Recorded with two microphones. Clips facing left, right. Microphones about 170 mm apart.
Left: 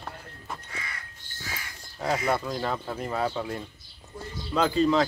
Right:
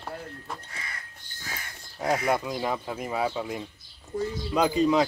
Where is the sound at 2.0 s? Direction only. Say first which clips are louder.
Right 1 dB; 15° right (ahead or behind).